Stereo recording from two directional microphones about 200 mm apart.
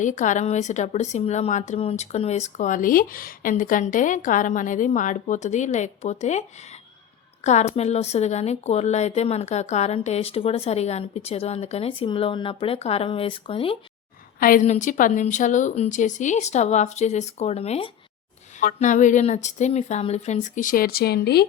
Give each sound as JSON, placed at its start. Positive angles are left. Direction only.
{"t": 0.0, "sound": "a woman's voice", "side_deg": 40}
{"t": 7.4, "sound": "a woman's voice", "side_deg": 35}
{"t": 14.3, "sound": "a woman's voice", "side_deg": 45}
{"t": 18.6, "sound": "a woman's voice", "side_deg": 40}